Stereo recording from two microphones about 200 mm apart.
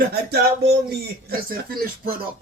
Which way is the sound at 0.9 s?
50° right (ahead or behind).